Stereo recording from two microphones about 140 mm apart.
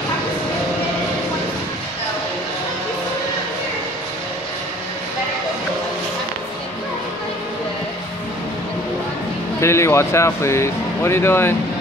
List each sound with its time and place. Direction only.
9.6 s speech: 20° left (ahead or behind)